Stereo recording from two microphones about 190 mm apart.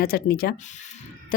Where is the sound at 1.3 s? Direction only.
45° left (ahead or behind).